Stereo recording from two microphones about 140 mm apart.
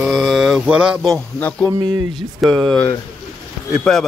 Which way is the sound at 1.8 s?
35° right (ahead or behind).